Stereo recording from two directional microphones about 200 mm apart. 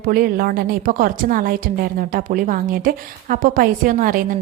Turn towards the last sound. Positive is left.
turn(degrees=-45)  # may be behind; listen again after turning